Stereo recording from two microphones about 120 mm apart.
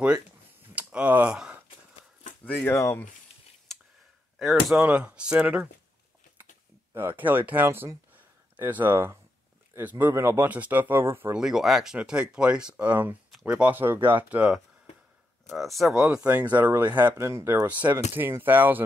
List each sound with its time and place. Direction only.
0.7 s a sound: 10° right (ahead or behind)
2.4 s a sound: 15° left (ahead or behind)
4.7 s speech: 15° right (ahead or behind)
6.9 s speech: 20° right (ahead or behind)
11.3 s speech: 5° right (ahead or behind)
16.5 s speech: 15° right (ahead or behind)